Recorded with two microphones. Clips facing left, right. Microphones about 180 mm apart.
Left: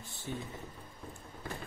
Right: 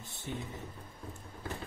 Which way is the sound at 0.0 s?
20° right (ahead or behind).